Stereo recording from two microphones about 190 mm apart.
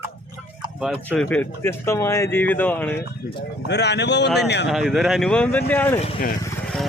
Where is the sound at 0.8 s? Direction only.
Centre (ahead or behind).